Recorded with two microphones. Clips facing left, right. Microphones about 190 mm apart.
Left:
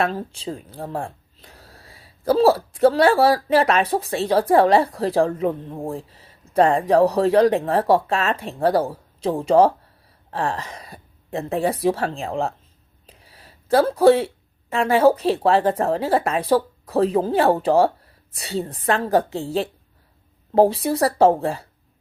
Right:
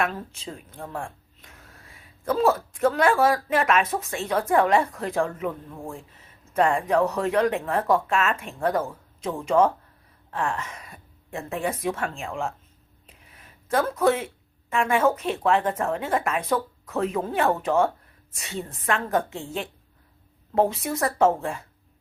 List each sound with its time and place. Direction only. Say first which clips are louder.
0.0 s speech: left 5 dB; 30° left (ahead or behind)